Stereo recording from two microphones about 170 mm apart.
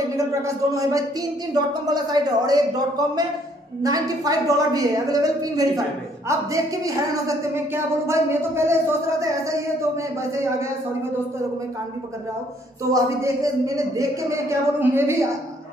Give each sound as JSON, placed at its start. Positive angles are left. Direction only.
{"t": 0.1, "sound": "a woman's voice", "side_deg": -15}
{"t": 12.9, "sound": "a woman's voice", "side_deg": -20}